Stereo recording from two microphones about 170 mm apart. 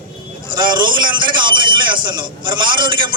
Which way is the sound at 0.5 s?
25° right (ahead or behind).